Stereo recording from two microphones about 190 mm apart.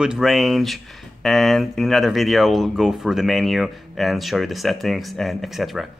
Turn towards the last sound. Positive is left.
turn(degrees=0)  # may be behind; listen again after turning